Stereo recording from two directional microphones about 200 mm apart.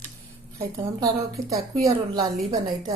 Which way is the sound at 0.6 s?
15° right (ahead or behind).